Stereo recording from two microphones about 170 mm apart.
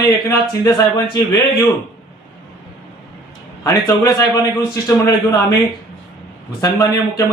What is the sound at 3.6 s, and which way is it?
A man's voice, 20° left (ahead or behind).